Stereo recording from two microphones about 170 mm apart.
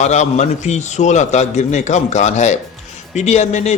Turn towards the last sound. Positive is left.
turn(degrees=45)  # may be behind; listen again after turning